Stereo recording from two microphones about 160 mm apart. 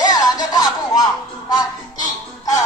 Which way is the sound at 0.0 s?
25° left (ahead or behind).